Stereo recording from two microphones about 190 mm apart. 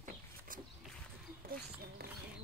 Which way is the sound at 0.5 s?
45° right (ahead or behind).